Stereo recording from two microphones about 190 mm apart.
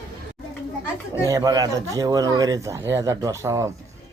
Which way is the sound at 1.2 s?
20° right (ahead or behind).